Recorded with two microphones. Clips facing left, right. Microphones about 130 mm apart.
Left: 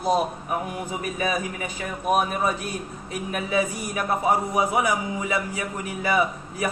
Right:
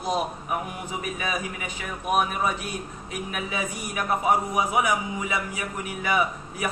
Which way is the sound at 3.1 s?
35° left (ahead or behind).